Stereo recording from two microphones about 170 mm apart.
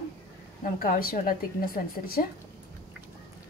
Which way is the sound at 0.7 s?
55° left (ahead or behind).